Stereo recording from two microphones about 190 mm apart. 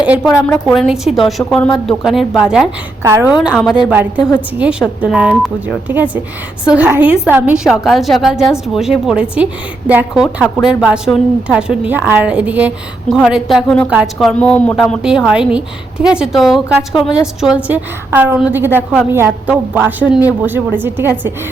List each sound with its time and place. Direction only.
0.3 s a woman's voice: 10° left (ahead or behind)
0.7 s speech: centre (ahead or behind)
3.0 s a woman's voice: 15° right (ahead or behind)
3.4 s a woman's voice: 5° left (ahead or behind)